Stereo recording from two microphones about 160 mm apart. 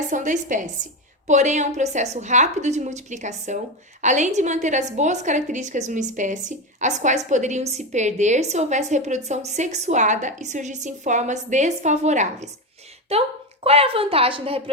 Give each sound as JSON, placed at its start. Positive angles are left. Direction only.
{"t": 0.1, "sound": "a woman's voice", "side_deg": -50}